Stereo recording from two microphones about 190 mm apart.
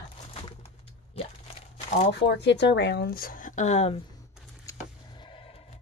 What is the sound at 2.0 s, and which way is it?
Speech, 65° left (ahead or behind).